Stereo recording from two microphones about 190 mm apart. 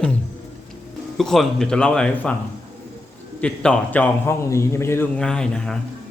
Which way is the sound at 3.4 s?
5° left (ahead or behind).